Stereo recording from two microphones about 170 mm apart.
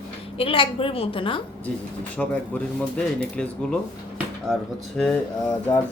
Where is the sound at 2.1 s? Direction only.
10° left (ahead or behind).